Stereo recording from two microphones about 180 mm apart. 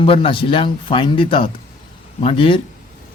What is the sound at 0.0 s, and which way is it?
Speech, 30° left (ahead or behind).